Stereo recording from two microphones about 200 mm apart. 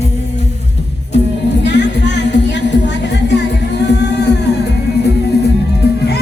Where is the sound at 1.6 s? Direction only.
60° left (ahead or behind).